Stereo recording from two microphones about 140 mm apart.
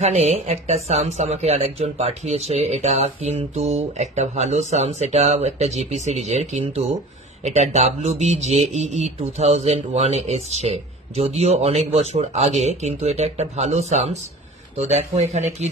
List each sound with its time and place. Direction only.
0.0 s speech: 50° right (ahead or behind)